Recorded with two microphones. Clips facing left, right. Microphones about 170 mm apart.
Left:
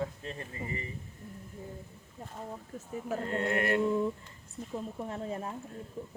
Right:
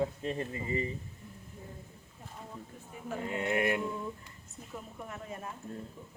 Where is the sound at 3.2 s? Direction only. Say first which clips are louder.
Right 1 dB; 10° right (ahead or behind).